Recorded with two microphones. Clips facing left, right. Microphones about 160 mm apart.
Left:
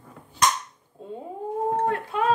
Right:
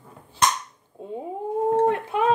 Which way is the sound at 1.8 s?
20° right (ahead or behind).